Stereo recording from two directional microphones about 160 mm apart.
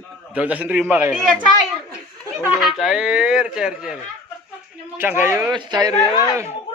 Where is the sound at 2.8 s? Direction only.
5° right (ahead or behind).